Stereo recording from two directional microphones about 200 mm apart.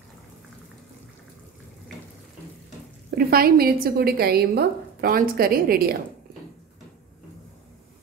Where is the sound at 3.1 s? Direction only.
50° right (ahead or behind).